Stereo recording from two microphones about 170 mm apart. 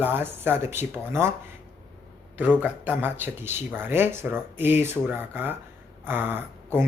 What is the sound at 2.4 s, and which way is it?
Speech, 10° right (ahead or behind).